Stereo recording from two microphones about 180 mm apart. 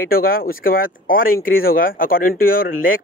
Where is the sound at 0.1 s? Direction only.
55° left (ahead or behind).